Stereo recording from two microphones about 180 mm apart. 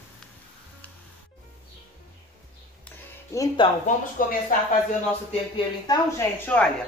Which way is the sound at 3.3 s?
15° left (ahead or behind).